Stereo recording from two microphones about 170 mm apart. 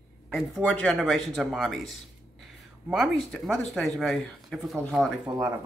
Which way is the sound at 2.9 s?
Centre (ahead or behind).